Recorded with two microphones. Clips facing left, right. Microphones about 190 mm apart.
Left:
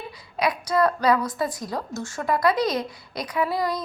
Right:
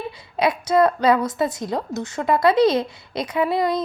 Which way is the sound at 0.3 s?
25° right (ahead or behind).